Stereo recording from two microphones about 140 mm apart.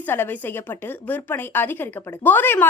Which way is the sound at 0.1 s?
15° left (ahead or behind).